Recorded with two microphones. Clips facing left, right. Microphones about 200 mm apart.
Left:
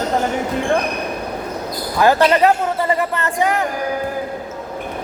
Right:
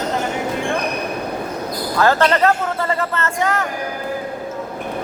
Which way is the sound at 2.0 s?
15° left (ahead or behind).